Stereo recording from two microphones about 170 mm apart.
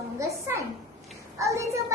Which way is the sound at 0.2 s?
15° right (ahead or behind).